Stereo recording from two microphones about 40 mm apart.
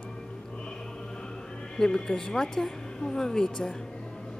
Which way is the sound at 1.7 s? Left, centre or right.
Centre.